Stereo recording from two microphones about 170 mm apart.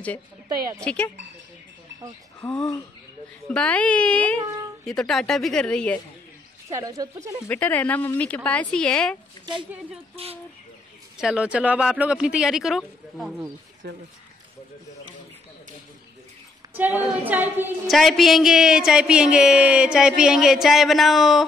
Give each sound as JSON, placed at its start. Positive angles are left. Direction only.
{"t": 0.8, "sound": "speech", "side_deg": 5}
{"t": 2.4, "sound": "speech", "side_deg": 5}
{"t": 6.7, "sound": "speech", "side_deg": -20}
{"t": 7.4, "sound": "speech", "side_deg": 10}
{"t": 9.5, "sound": "speech", "side_deg": -25}
{"t": 11.1, "sound": "speech", "side_deg": -5}
{"t": 13.8, "sound": "speech", "side_deg": -75}
{"t": 16.7, "sound": "a woman's voice", "side_deg": -10}
{"t": 17.8, "sound": "speech", "side_deg": 0}